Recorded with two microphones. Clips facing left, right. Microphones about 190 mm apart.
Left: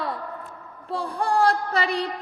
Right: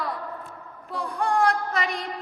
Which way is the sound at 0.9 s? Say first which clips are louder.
Left 1 dB; 30° left (ahead or behind).